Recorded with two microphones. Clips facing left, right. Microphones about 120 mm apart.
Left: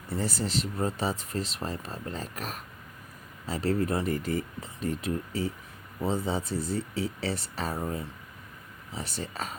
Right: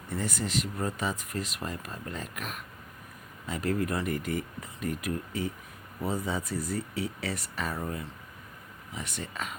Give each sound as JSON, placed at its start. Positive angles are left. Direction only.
{"t": 0.1, "sound": "speech", "side_deg": 30}